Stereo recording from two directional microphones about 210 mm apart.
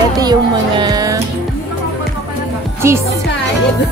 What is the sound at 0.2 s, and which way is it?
Music, 20° right (ahead or behind).